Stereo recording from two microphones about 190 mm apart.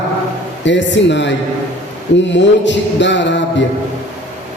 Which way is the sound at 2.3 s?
70° left (ahead or behind).